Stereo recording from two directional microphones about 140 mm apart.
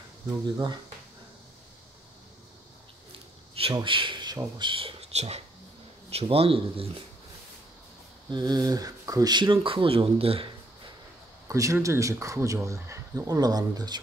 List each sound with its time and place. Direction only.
3.5 s a man's voice: 40° right (ahead or behind)
8.3 s speech: 30° right (ahead or behind)
11.4 s speech: 25° right (ahead or behind)